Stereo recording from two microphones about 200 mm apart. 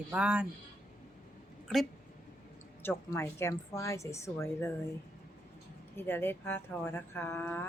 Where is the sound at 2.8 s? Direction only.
10° left (ahead or behind).